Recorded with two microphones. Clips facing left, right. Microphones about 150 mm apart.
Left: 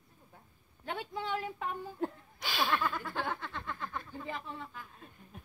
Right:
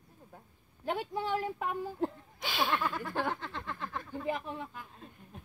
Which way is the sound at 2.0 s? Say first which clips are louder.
Right 2 dB; 20° right (ahead or behind).